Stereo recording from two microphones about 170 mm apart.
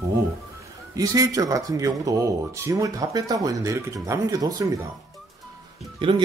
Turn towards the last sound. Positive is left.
turn(degrees=-30)  # may be behind; listen again after turning